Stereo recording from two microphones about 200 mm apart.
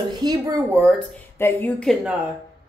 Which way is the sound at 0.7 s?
Centre (ahead or behind).